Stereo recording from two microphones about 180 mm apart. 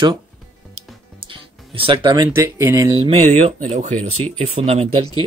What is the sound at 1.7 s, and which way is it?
Speech, 30° right (ahead or behind).